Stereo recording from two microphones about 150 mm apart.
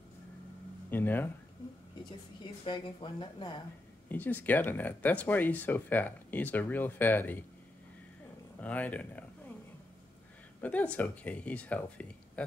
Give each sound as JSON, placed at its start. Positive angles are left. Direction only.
{"t": 0.8, "sound": "speech", "side_deg": 15}
{"t": 2.6, "sound": "speech", "side_deg": 30}
{"t": 4.1, "sound": "speech", "side_deg": 10}
{"t": 8.5, "sound": "speech", "side_deg": 10}
{"t": 10.6, "sound": "speech", "side_deg": 10}